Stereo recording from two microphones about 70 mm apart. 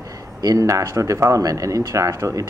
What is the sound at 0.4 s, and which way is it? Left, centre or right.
Speech, right.